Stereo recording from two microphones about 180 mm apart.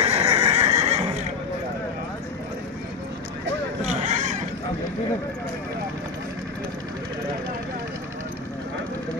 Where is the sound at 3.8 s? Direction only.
40° right (ahead or behind).